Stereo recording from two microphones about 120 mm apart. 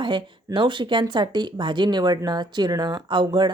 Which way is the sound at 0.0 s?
40° right (ahead or behind).